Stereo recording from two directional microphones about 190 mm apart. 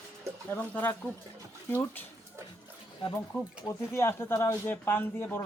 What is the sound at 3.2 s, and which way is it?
Speech, 10° left (ahead or behind).